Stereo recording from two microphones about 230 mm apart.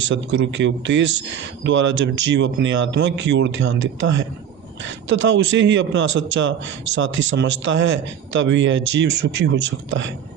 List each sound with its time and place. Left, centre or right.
0.1 s speech: right